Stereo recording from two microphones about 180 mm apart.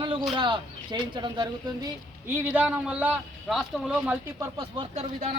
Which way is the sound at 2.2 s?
10° right (ahead or behind).